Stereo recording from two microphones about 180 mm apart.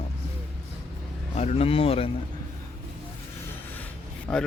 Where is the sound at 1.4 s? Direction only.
35° left (ahead or behind).